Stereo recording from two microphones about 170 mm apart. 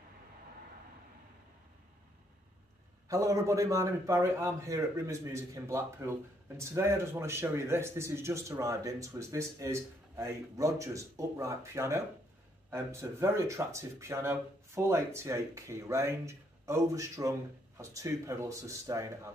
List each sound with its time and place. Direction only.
3.1 s a man's voice: 20° right (ahead or behind)